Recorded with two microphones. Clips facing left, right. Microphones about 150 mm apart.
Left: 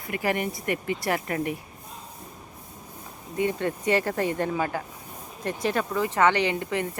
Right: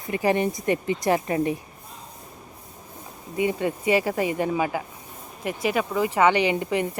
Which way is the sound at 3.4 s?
15° right (ahead or behind).